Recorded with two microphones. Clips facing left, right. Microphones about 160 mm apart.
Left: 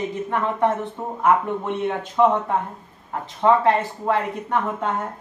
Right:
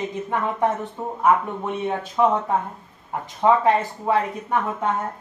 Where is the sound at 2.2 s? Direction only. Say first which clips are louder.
Left 2 dB; 5° right (ahead or behind).